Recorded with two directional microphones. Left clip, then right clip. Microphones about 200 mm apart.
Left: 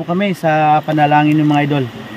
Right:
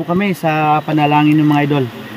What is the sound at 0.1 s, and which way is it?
Speech, 5° left (ahead or behind).